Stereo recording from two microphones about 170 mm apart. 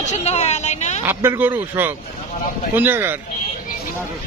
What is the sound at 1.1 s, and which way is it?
Speech, 10° right (ahead or behind).